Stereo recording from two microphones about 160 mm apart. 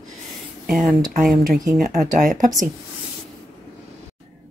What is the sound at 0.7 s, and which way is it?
Speech, centre (ahead or behind).